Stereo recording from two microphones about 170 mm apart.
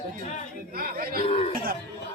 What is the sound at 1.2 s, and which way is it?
Cough, 35° left (ahead or behind).